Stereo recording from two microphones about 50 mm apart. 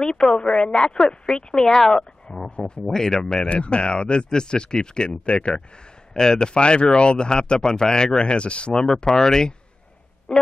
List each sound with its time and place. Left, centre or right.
0.0 s speech: centre
2.5 s speech: left
2.8 s speech: centre
3.4 s speech: left
10.3 s a sound: centre